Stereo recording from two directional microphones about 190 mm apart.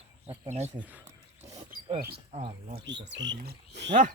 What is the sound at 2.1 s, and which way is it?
Speech, 30° right (ahead or behind).